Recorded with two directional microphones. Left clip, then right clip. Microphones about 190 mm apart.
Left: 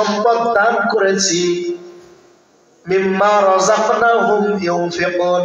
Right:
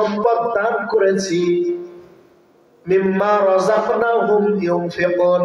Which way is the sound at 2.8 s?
35° right (ahead or behind).